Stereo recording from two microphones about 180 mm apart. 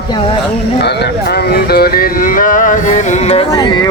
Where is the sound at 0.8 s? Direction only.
70° left (ahead or behind); by 3.5 s 35° left (ahead or behind).